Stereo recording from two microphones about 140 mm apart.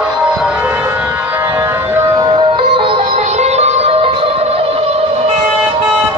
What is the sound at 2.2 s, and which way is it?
Music, 35° right (ahead or behind).